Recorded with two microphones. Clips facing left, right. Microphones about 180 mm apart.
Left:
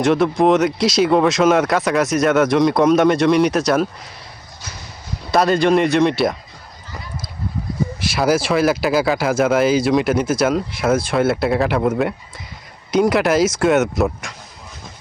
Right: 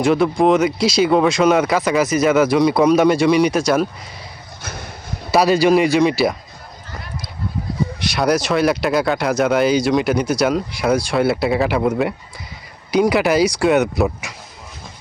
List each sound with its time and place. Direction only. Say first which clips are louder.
0.0 s speech: even; centre (ahead or behind)
4.6 s a sound: right 5 dB; 55° right (ahead or behind)
5.3 s speech: right 1 dB; 5° right (ahead or behind)
7.9 s speech: left 1 dB; centre (ahead or behind)